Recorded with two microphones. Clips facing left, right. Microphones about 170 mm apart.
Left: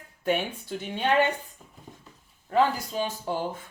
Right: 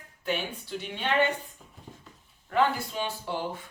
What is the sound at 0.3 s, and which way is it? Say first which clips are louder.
Speech: left 4 dB; 50° left (ahead or behind).